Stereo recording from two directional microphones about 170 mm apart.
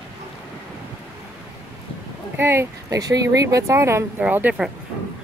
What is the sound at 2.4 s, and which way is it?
Speech, 15° right (ahead or behind).